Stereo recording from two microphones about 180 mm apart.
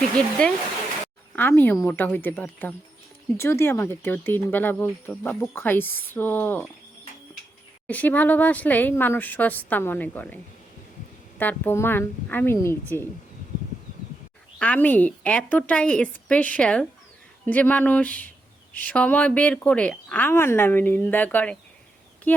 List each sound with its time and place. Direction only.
0.2 s speech: 5° left (ahead or behind)
7.9 s speech: 10° left (ahead or behind)
11.3 s speech: 10° left (ahead or behind)
14.6 s speech: 10° left (ahead or behind)
22.3 s a sound: 10° left (ahead or behind)